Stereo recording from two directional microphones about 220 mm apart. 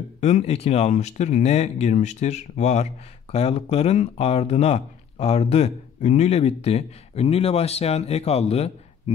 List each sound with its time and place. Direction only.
0.2 s speech: 30° left (ahead or behind)